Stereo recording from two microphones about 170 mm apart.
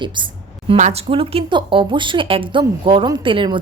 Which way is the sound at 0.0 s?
30° right (ahead or behind).